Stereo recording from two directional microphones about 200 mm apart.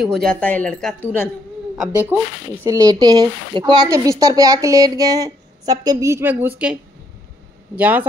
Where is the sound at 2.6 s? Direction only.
15° right (ahead or behind).